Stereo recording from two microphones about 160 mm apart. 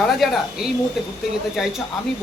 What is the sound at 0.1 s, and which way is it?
Speech, centre (ahead or behind).